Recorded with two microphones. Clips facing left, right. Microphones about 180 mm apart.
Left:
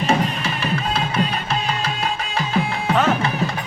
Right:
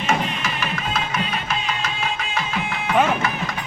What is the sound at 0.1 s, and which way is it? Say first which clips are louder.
Music: left 1 dB; 30° left (ahead or behind).